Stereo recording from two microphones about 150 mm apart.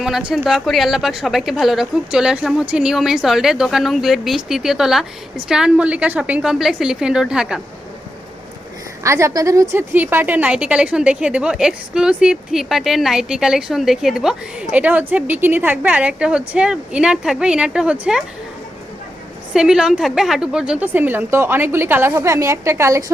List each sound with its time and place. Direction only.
0.0 s a woman's voice: 5° right (ahead or behind)
9.0 s a woman's voice: 20° right (ahead or behind)
19.5 s a woman's voice: 5° right (ahead or behind); by 23.1 s 20° right (ahead or behind)